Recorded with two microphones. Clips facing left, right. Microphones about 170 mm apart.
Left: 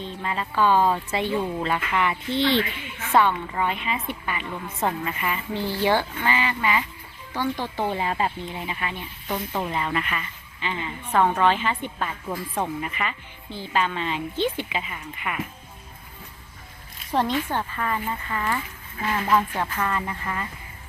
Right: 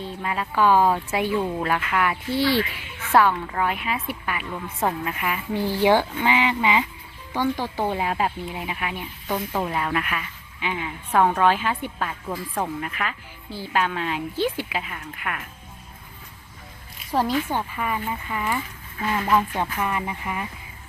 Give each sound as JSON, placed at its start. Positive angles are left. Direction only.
{"t": 0.0, "sound": "a woman's voice", "side_deg": -5}
{"t": 17.1, "sound": "a woman's voice", "side_deg": -5}